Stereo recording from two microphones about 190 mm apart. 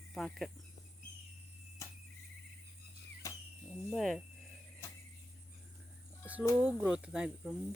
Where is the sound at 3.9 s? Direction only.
Centre (ahead or behind).